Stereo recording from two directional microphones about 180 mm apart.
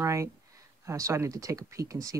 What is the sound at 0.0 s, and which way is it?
Speech, 15° right (ahead or behind).